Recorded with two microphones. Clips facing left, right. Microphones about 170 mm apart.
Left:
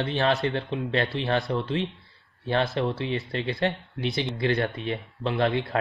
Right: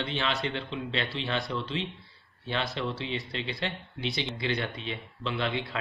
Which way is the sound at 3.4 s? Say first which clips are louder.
Left 11 dB; 20° right (ahead or behind).